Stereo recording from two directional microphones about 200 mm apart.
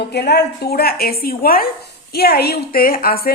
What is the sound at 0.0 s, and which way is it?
Speech, 55° left (ahead or behind).